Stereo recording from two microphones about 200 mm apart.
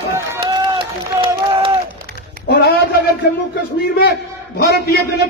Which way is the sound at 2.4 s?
50° left (ahead or behind).